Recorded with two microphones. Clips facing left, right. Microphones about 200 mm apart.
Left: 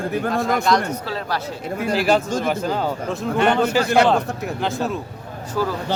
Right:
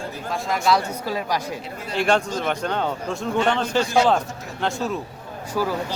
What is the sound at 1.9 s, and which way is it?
Speech, 5° left (ahead or behind).